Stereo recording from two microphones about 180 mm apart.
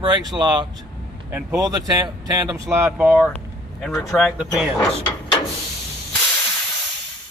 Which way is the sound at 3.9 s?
10° left (ahead or behind).